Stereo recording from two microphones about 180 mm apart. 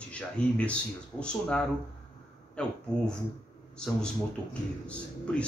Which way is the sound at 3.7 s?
5° left (ahead or behind).